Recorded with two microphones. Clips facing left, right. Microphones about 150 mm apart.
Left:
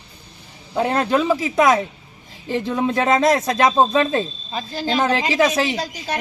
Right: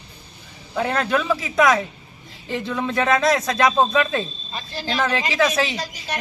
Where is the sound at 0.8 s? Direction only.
25° left (ahead or behind).